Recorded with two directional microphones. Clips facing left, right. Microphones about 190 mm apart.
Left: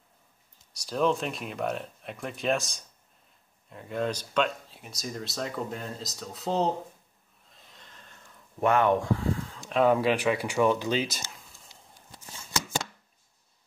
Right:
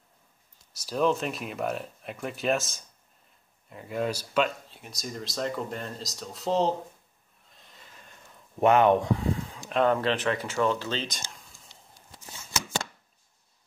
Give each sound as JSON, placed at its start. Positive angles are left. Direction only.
{"t": 0.7, "sound": "speech", "side_deg": 0}
{"t": 7.4, "sound": "a sound", "side_deg": 0}
{"t": 8.5, "sound": "speech", "side_deg": -20}
{"t": 9.7, "sound": "speech", "side_deg": 5}